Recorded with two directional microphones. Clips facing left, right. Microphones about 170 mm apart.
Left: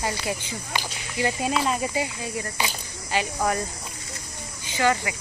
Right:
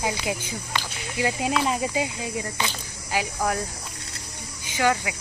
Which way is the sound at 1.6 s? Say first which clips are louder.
Right 1 dB; 15° right (ahead or behind).